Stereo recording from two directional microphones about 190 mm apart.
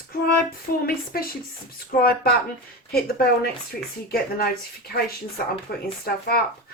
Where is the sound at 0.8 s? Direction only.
50° left (ahead or behind).